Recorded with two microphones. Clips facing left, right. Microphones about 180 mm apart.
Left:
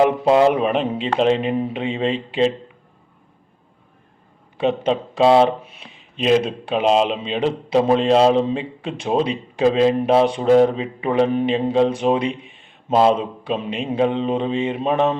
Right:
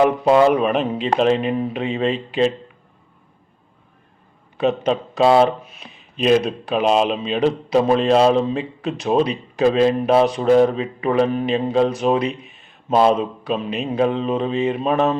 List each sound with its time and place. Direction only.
0.0 s speech: 25° left (ahead or behind)
4.5 s speech: 30° left (ahead or behind)